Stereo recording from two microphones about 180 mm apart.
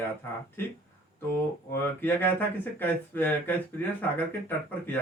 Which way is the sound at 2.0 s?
10° left (ahead or behind).